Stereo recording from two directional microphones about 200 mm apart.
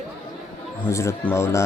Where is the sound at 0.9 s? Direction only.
15° left (ahead or behind).